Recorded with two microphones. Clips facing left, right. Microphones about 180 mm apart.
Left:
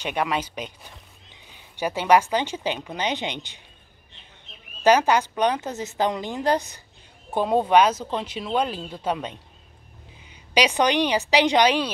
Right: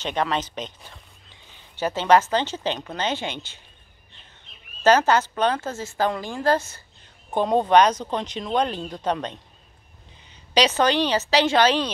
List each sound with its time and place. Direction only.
0.0 s speech: 10° left (ahead or behind)
4.8 s a woman's voice: 10° left (ahead or behind)